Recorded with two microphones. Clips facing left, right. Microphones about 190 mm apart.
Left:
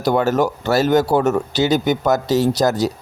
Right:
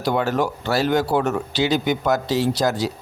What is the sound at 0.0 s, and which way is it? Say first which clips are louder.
Speech: left 4 dB; 45° left (ahead or behind).